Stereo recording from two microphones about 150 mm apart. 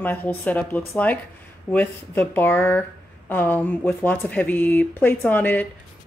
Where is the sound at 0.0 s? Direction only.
15° left (ahead or behind).